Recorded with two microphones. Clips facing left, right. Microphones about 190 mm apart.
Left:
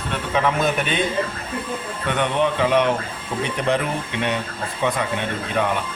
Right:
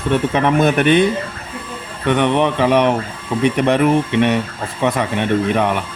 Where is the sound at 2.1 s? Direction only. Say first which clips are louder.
Right 6 dB; 60° right (ahead or behind).